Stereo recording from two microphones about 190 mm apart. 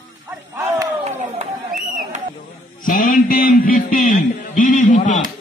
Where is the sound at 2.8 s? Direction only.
45° left (ahead or behind).